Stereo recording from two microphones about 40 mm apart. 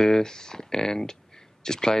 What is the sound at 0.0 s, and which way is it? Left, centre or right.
Speech, centre.